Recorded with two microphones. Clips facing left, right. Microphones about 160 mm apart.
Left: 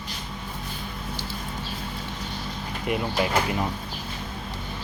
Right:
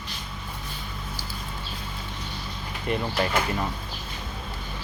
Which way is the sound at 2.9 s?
10° left (ahead or behind).